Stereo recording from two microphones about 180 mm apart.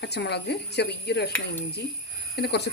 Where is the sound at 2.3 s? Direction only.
65° left (ahead or behind).